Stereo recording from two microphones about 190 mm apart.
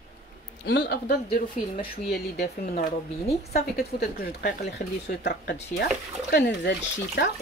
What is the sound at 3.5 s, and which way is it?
A woman's voice, 55° left (ahead or behind).